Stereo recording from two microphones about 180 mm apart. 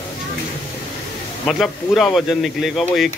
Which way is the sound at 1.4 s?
Centre (ahead or behind).